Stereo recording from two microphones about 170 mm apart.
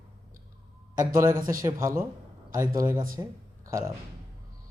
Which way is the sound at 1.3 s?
55° right (ahead or behind).